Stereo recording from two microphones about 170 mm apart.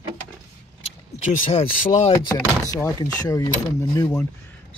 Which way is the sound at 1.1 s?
45° left (ahead or behind).